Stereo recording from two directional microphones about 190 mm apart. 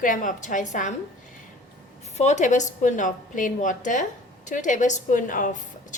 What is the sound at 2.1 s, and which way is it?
A woman's voice, 35° left (ahead or behind).